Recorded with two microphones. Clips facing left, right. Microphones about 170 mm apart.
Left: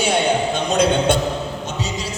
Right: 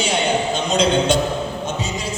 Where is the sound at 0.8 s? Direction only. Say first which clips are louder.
Even; 60° left (ahead or behind).